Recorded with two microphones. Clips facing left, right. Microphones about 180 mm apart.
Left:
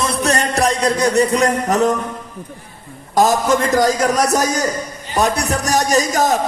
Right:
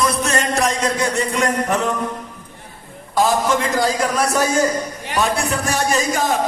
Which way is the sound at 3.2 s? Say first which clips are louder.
Left 3 dB; 45° left (ahead or behind).